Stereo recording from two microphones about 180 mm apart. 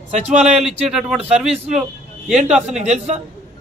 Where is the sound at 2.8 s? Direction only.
40° right (ahead or behind).